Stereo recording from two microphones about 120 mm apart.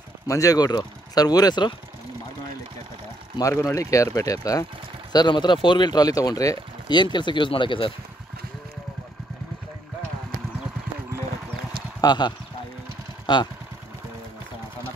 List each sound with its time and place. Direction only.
0.3 s speech: 30° left (ahead or behind)
3.3 s speech: 25° left (ahead or behind); by 7.9 s 45° left (ahead or behind)
12.0 s speech: 35° left (ahead or behind)